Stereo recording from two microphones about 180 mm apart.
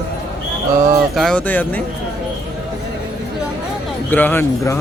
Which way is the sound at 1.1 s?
Centre (ahead or behind).